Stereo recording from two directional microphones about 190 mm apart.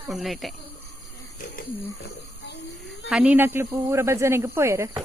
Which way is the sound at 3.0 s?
5° right (ahead or behind).